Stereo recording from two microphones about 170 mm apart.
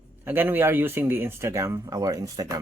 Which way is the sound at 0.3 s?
10° right (ahead or behind).